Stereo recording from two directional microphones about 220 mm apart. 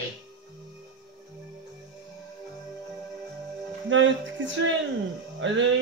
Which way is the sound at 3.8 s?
60° right (ahead or behind).